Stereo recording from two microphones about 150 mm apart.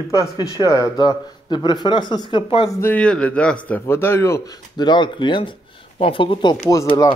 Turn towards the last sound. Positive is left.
turn(degrees=20)  # may be behind; listen again after turning